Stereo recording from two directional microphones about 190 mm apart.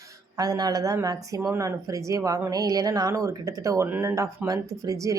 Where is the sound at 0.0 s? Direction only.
20° right (ahead or behind).